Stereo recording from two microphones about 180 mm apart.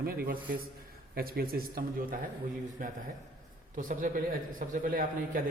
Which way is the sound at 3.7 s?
50° right (ahead or behind).